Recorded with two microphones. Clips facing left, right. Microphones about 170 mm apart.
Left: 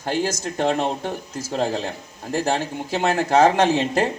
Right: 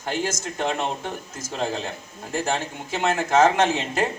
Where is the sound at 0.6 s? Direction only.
50° left (ahead or behind).